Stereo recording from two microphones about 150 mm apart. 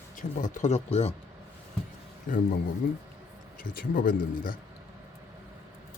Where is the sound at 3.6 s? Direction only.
65° left (ahead or behind).